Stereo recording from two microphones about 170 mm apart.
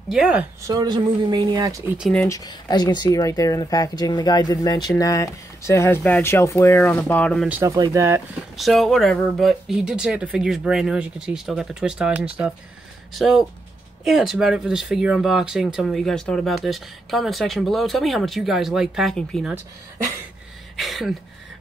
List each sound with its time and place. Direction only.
0.1 s speech: 5° right (ahead or behind)
2.0 s speech: centre (ahead or behind)
2.2 s speech: 20° left (ahead or behind)
7.6 s speech: 20° right (ahead or behind)
8.5 s speech: centre (ahead or behind)
20.7 s a sound: centre (ahead or behind)